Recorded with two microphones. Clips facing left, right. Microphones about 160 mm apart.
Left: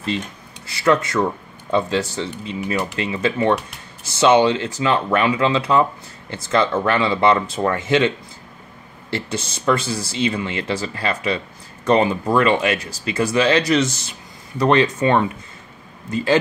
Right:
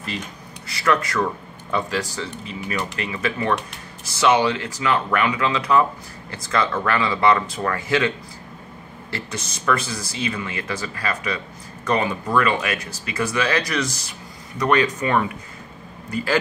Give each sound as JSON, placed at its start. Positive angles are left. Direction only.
{"t": 0.7, "sound": "speech", "side_deg": 25}
{"t": 9.1, "sound": "speech", "side_deg": 30}